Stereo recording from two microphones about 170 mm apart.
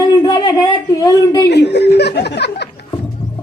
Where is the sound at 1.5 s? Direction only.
80° left.